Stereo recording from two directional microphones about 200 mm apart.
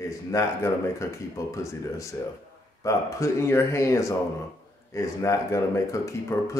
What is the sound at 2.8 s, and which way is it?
Speech, 15° left (ahead or behind).